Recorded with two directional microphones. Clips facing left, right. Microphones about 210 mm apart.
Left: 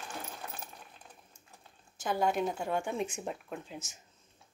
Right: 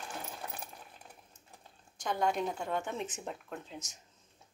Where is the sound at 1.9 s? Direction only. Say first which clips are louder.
Left 2 dB; 5° left (ahead or behind).